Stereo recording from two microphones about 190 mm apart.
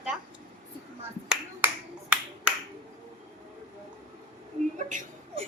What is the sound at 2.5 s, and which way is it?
Finger snapping, 5° right (ahead or behind).